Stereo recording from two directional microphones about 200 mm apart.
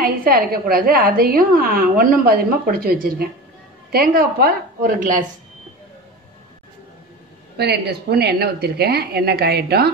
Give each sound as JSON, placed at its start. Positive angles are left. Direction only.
{"t": 0.0, "sound": "a woman's voice", "side_deg": -50}
{"t": 7.5, "sound": "a woman's voice", "side_deg": -55}